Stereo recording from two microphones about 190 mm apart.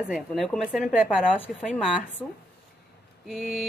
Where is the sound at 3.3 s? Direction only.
Centre (ahead or behind).